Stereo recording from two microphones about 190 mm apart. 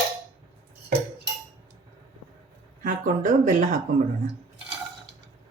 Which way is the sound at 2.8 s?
40° right (ahead or behind).